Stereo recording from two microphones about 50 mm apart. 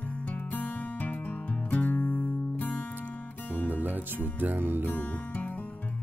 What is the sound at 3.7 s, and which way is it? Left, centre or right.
Speech, right.